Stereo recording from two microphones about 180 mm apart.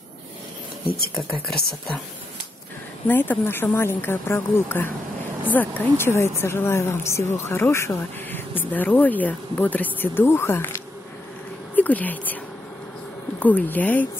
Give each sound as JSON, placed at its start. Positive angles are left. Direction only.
{"t": 0.8, "sound": "speech", "side_deg": 60}
{"t": 3.1, "sound": "speech", "side_deg": 10}
{"t": 13.4, "sound": "speech", "side_deg": 10}